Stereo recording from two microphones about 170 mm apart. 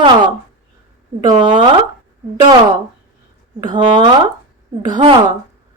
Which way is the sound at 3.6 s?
25° right (ahead or behind).